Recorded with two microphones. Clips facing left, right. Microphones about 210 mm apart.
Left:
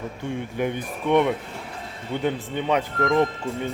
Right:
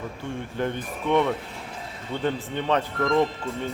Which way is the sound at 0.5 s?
15° left (ahead or behind).